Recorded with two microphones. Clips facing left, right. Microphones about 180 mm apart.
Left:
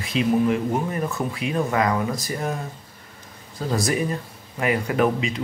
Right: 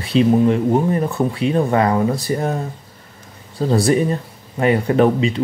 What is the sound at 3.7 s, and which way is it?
Speech, 35° right (ahead or behind).